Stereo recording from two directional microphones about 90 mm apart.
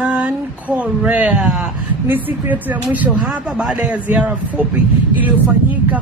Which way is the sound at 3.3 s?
5° right (ahead or behind).